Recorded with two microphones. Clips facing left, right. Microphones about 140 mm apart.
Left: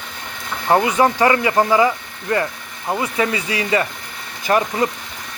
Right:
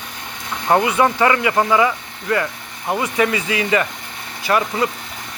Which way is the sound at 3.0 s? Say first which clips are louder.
Right 2 dB; 30° left (ahead or behind).